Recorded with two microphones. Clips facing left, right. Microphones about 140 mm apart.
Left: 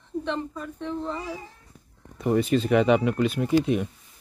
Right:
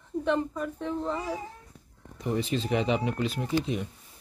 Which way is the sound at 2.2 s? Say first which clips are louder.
Left 7 dB; 55° left (ahead or behind).